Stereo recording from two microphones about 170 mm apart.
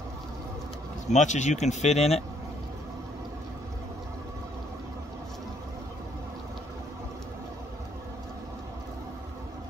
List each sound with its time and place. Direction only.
1.1 s speech: 45° left (ahead or behind)